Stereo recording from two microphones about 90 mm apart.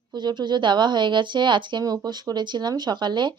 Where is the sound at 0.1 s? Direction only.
55° right (ahead or behind).